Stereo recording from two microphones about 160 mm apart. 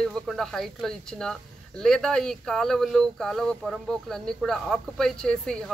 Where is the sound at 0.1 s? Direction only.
5° left (ahead or behind).